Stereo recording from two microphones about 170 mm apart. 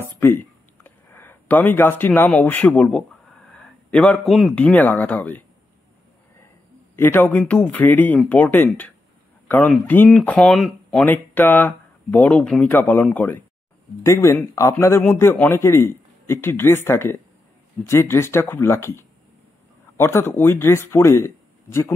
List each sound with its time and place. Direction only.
0.0 s a sound: 15° left (ahead or behind)
3.5 s a man's voice: 10° left (ahead or behind)
7.0 s speech: 10° left (ahead or behind)